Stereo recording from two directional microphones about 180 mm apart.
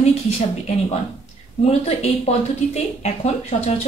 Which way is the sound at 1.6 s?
35° left (ahead or behind).